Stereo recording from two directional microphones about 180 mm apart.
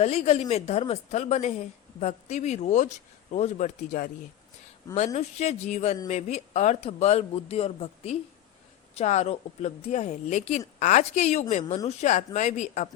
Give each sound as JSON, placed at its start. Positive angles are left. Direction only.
{"t": 0.0, "sound": "a man's voice", "side_deg": 35}